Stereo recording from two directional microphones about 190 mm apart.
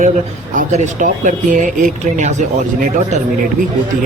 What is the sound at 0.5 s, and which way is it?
Speech, 40° right (ahead or behind).